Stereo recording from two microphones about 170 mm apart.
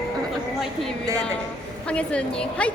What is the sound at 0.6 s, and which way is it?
A woman's voice, centre (ahead or behind).